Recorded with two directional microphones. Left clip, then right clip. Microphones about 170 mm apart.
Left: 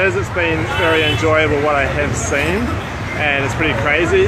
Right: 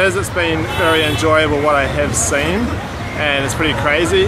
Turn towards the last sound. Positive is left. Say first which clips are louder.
# even
turn(degrees=-15)  # may be behind; listen again after turning